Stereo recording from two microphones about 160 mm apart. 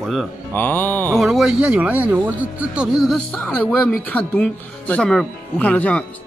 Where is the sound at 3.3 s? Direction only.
10° left (ahead or behind).